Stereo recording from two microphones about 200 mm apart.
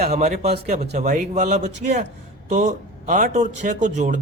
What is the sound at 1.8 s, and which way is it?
Speech, 45° right (ahead or behind).